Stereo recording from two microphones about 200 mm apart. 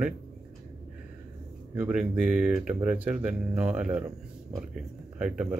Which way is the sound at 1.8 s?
5° right (ahead or behind).